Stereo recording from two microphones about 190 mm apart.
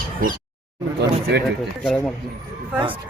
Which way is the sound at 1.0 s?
60° right (ahead or behind).